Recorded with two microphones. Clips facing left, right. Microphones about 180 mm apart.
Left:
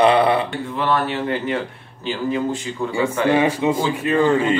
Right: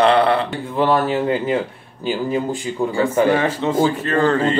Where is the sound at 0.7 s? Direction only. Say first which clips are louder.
Right 4 dB; 30° right (ahead or behind).